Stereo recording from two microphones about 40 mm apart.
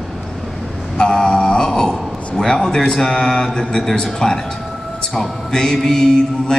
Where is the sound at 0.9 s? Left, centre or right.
Centre.